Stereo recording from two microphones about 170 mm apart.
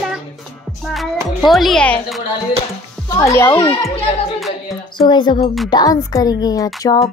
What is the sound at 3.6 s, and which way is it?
Speech, 25° left (ahead or behind).